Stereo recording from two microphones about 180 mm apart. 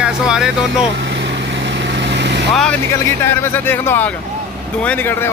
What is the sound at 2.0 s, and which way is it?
Vehicle, 75° right (ahead or behind).